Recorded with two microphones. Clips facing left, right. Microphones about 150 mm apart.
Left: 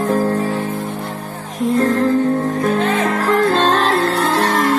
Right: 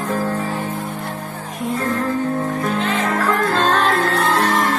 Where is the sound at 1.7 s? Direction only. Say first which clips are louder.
Left 6 dB; 40° left (ahead or behind).